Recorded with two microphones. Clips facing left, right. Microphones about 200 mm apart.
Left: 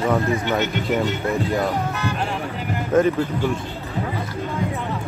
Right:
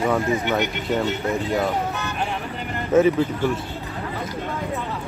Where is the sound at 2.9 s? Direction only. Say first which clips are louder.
Right 1 dB; 5° right (ahead or behind).